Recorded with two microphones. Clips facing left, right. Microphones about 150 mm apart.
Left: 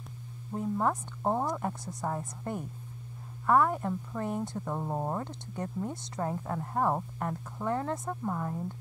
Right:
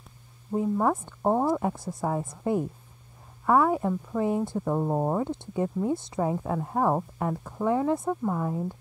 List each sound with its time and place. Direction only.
0.6 s speech: 10° right (ahead or behind)
1.2 s speech: 20° right (ahead or behind)
1.5 s speech: 5° right (ahead or behind)
4.7 s speech: 25° right (ahead or behind)
5.1 s speech: 10° right (ahead or behind)